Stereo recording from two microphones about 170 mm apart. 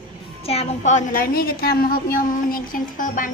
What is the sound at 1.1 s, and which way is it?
A woman's voice, 65° left (ahead or behind).